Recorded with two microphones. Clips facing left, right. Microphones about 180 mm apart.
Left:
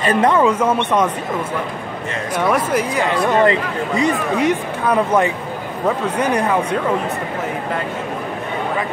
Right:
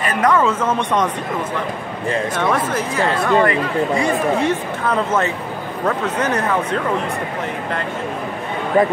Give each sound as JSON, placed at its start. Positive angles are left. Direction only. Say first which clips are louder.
{"t": 0.0, "sound": "a woman's voice", "louder": "left 2 dB", "side_deg": 25}
{"t": 0.4, "sound": "speech", "louder": "left 3 dB", "side_deg": 15}
{"t": 2.5, "sound": "speech", "louder": "left 2 dB", "side_deg": 15}